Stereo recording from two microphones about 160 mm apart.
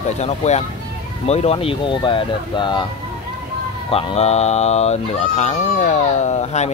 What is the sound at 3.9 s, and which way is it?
Speech, 40° left (ahead or behind).